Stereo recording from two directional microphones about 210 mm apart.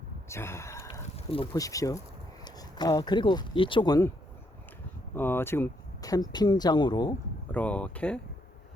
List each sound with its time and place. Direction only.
0.3 s a sound: 10° left (ahead or behind)
1.1 s speech: 25° left (ahead or behind)
5.1 s speech: 10° left (ahead or behind)
7.5 s speech: 5° left (ahead or behind)